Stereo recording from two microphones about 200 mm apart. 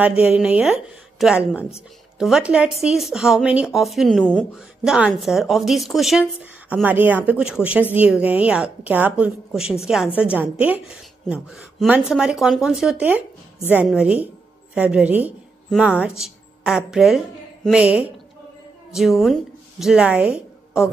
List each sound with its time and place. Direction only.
0.0 s a woman's voice: 5° right (ahead or behind)